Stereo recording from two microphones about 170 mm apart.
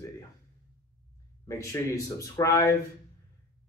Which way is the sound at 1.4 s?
15° left (ahead or behind).